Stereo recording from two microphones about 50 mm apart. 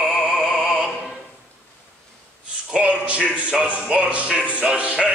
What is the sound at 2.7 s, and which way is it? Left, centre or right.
Music, right.